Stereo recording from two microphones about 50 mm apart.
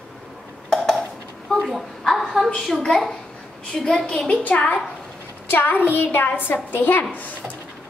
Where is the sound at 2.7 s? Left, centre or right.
Centre.